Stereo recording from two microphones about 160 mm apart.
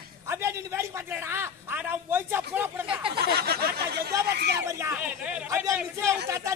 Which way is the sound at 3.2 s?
80° right.